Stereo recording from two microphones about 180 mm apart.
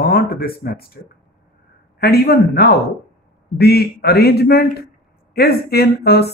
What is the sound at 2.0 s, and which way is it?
Speech, 60° left (ahead or behind).